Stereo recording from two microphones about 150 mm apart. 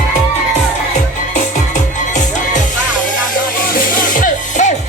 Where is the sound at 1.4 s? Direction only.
55° left (ahead or behind).